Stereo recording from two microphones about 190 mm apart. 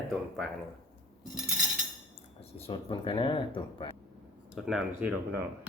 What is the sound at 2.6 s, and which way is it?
Speech, 25° left (ahead or behind).